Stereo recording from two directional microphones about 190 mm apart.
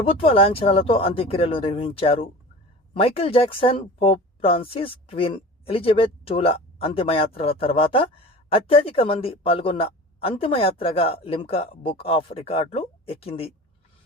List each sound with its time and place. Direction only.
0.0 s speech: 30° left (ahead or behind)